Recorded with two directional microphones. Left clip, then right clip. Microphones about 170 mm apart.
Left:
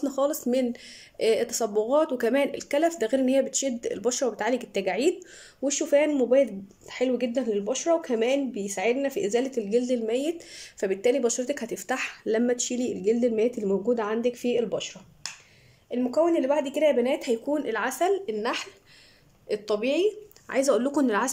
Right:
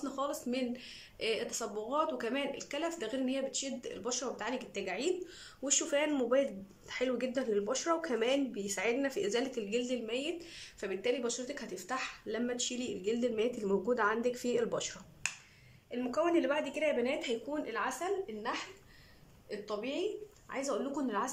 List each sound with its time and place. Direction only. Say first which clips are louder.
0.0 s speech: left 11 dB; 40° left (ahead or behind)
5.6 s speech: left 10 dB; 30° left (ahead or behind); by 15.0 s 15° left (ahead or behind)
15.9 s a woman's voice: left 8 dB; 30° left (ahead or behind); by 21.3 s 65° left (ahead or behind)